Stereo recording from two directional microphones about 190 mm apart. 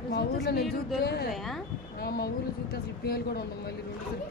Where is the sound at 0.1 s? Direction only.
60° left (ahead or behind).